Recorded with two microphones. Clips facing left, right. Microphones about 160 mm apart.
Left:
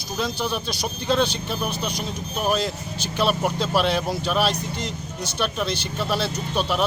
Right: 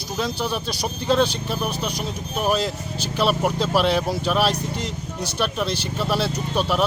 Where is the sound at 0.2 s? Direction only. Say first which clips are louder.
Right 1 dB; 5° right (ahead or behind).